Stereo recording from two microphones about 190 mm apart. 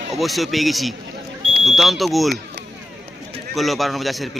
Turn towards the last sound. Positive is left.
turn(degrees=0)  # may be behind; listen again after turning